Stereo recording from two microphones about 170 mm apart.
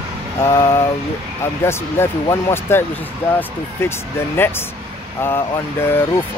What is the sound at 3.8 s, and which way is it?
Speech, 15° left (ahead or behind).